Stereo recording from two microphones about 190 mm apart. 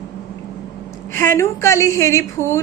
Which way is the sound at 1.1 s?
15° left (ahead or behind).